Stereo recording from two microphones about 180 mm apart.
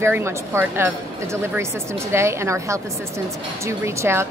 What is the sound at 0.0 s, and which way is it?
A woman's voice, 15° right (ahead or behind).